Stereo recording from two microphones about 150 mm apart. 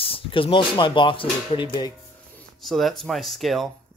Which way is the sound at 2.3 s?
Centre (ahead or behind).